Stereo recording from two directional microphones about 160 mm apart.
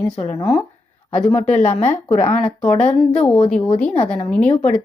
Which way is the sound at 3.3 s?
5° left (ahead or behind).